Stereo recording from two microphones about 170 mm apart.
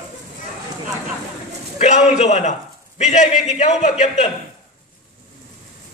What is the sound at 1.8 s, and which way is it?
A man's voice, 45° left (ahead or behind).